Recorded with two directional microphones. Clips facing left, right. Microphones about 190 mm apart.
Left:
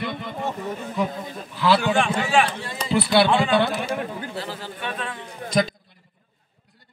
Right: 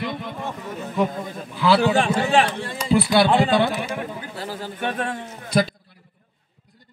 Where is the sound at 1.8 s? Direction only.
35° right (ahead or behind).